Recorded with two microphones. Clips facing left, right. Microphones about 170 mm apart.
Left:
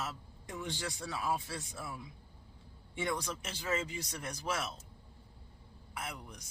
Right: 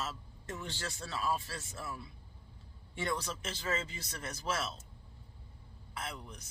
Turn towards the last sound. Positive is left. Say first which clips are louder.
# even
turn(degrees=10)  # may be behind; listen again after turning